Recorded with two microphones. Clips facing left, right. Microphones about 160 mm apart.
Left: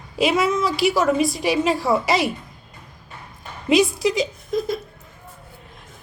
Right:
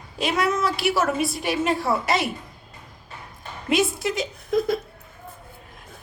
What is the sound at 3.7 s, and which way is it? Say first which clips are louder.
Speech: left 5 dB; centre (ahead or behind).